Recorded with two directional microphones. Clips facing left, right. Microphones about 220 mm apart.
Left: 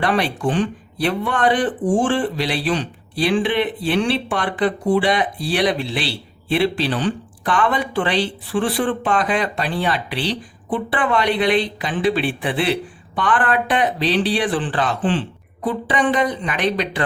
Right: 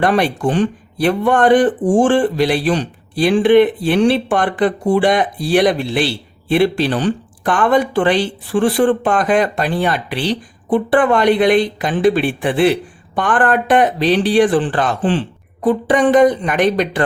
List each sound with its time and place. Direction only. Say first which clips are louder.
0.0 s speech: right 4 dB; 45° right (ahead or behind)